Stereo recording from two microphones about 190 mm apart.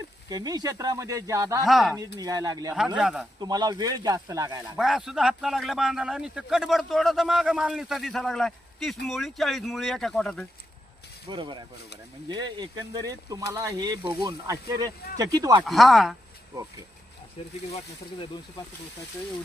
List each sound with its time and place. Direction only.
0.3 s speech: 20° right (ahead or behind)
1.6 s speech: centre (ahead or behind)
2.1 s speech: 20° right (ahead or behind)
2.7 s speech: 5° right (ahead or behind)
3.4 s speech: 20° right (ahead or behind)
4.8 s speech: centre (ahead or behind)
11.3 s speech: 25° right (ahead or behind)
15.6 s speech: centre (ahead or behind)
17.7 s speech: 30° left (ahead or behind)